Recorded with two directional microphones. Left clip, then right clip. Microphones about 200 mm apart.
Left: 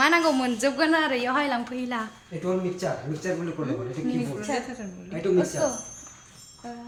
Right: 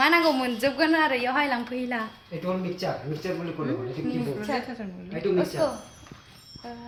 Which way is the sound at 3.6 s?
Centre (ahead or behind).